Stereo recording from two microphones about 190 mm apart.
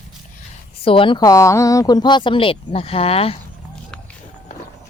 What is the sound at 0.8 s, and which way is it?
Speech, 25° left (ahead or behind).